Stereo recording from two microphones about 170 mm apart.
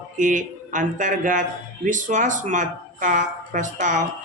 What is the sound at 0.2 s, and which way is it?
Speech, 50° right (ahead or behind).